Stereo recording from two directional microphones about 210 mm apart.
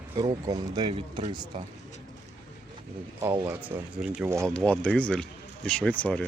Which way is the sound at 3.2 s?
10° right (ahead or behind).